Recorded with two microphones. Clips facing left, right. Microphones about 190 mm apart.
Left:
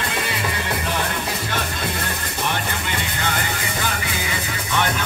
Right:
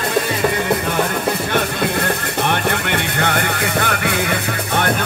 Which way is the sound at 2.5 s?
60° right (ahead or behind).